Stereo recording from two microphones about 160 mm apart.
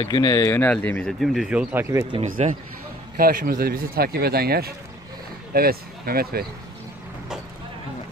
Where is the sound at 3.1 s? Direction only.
65° right (ahead or behind).